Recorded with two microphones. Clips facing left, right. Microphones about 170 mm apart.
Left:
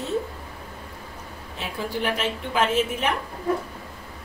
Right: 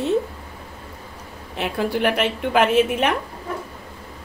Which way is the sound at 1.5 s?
65° right (ahead or behind).